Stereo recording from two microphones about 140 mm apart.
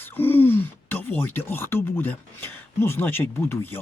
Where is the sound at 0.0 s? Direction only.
15° left (ahead or behind).